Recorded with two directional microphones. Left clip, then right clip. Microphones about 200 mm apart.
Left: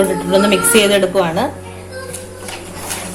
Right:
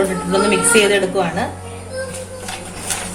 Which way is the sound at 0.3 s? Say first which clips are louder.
Left 2 dB; 35° left (ahead or behind).